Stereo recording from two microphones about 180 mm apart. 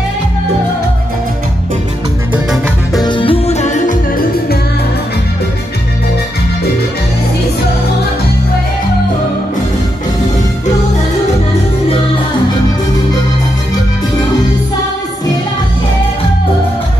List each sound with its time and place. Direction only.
2.3 s music: centre (ahead or behind)
3.0 s music: 25° left (ahead or behind); by 4.0 s 45° left (ahead or behind)